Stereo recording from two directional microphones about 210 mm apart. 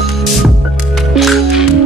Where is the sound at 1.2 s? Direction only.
Centre (ahead or behind).